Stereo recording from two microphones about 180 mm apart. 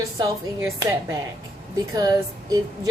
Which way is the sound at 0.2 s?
15° right (ahead or behind).